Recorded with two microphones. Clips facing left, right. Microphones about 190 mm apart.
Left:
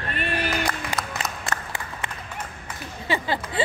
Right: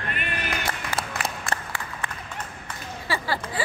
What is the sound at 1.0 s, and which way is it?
Applause, 30° right (ahead or behind).